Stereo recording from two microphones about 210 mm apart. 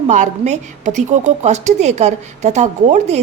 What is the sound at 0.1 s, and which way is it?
A woman's voice, 35° right (ahead or behind).